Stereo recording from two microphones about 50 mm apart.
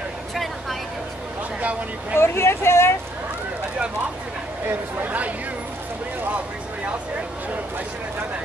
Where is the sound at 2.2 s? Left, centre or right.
Left.